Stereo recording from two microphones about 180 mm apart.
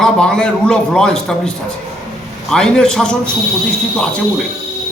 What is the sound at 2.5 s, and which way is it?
Speech, 5° left (ahead or behind).